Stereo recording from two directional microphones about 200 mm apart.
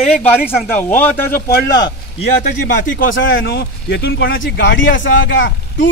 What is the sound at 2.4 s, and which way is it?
Speech, 40° left (ahead or behind).